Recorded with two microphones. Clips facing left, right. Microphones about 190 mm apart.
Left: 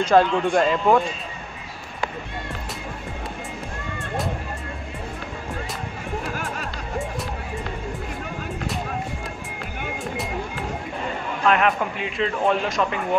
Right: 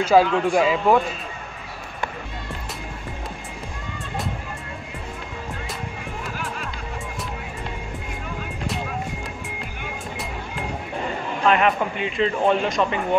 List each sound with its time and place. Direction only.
0.0 s speech: 5° right (ahead or behind)
6.3 s music: 45° left (ahead or behind)
11.4 s a man's voice: centre (ahead or behind)